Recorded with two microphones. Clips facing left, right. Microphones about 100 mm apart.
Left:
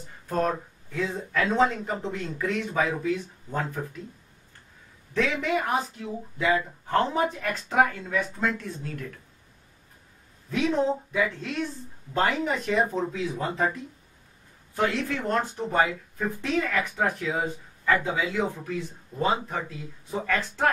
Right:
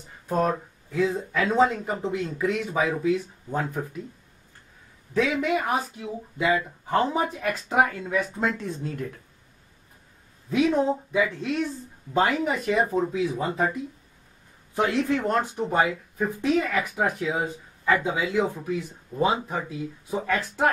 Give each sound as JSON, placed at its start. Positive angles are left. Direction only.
{"t": 0.3, "sound": "speech", "side_deg": -10}
{"t": 5.1, "sound": "speech", "side_deg": -10}
{"t": 8.4, "sound": "speech", "side_deg": -20}
{"t": 10.5, "sound": "speech", "side_deg": -10}
{"t": 14.8, "sound": "speech", "side_deg": -15}